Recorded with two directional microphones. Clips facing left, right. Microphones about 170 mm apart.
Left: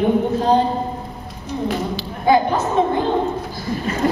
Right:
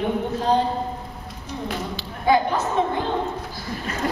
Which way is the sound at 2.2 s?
40° left (ahead or behind).